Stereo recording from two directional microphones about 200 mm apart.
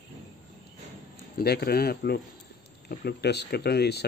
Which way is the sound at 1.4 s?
50° left (ahead or behind).